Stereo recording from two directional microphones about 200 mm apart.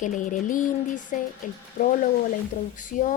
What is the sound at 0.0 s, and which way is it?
A woman's voice, 40° left (ahead or behind).